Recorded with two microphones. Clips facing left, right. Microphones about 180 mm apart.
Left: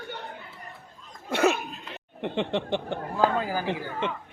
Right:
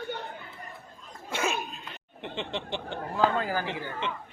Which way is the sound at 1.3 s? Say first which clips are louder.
Left 7 dB; 65° left (ahead or behind).